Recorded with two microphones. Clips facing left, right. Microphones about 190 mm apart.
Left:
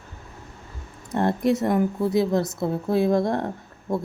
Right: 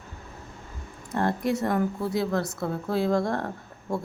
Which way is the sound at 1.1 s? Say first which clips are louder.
Left 4 dB; 20° left (ahead or behind).